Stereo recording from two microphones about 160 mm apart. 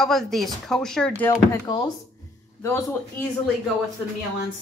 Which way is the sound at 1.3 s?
25° left (ahead or behind).